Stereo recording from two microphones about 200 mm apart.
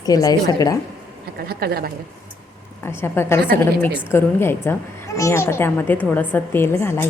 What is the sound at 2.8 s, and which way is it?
A woman's voice, 10° left (ahead or behind).